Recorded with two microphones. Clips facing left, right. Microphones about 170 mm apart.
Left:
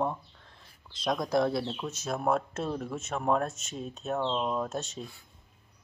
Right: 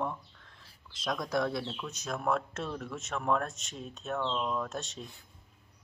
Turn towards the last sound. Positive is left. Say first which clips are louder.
# left 3 dB
turn(degrees=30)  # may be behind; listen again after turning